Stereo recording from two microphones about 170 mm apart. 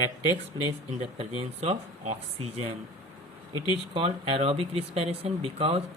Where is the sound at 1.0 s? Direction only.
35° right (ahead or behind).